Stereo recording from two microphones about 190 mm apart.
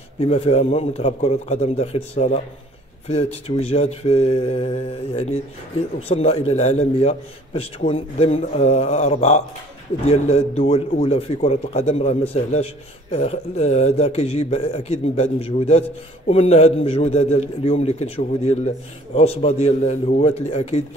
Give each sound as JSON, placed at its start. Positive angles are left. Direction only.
{"t": 0.2, "sound": "a man's voice", "side_deg": 35}